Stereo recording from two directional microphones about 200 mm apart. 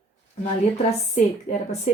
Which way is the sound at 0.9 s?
35° left (ahead or behind).